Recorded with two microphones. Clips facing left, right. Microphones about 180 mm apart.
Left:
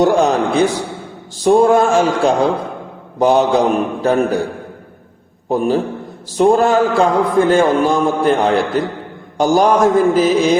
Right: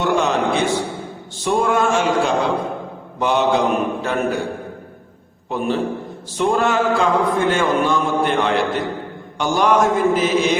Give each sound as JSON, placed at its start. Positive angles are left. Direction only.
{"t": 0.0, "sound": "a man's voice", "side_deg": 40}
{"t": 5.5, "sound": "a man's voice", "side_deg": 40}